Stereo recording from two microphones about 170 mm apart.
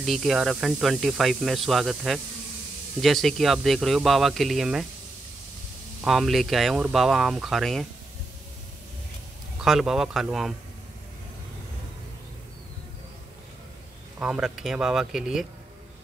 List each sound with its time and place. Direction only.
0.0 s speech: centre (ahead or behind)
5.9 s speech: centre (ahead or behind)
9.6 s speech: centre (ahead or behind)
14.2 s speech: 5° right (ahead or behind)